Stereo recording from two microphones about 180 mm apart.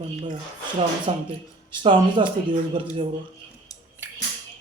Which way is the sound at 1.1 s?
30° right (ahead or behind).